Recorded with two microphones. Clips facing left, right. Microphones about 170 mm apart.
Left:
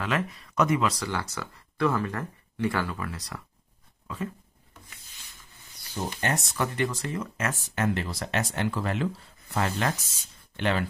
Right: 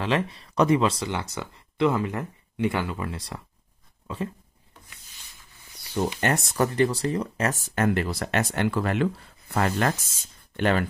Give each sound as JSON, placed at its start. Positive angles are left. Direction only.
{"t": 0.0, "sound": "speech", "side_deg": -30}
{"t": 5.9, "sound": "speech", "side_deg": -55}
{"t": 6.6, "sound": "speech", "side_deg": -35}
{"t": 7.7, "sound": "speech", "side_deg": -55}
{"t": 10.5, "sound": "speech", "side_deg": -50}